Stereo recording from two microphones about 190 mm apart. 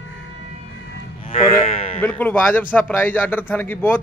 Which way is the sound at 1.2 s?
30° left (ahead or behind).